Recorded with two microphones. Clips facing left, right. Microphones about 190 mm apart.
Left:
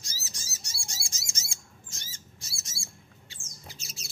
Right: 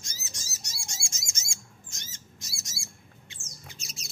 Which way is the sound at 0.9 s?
35° left (ahead or behind).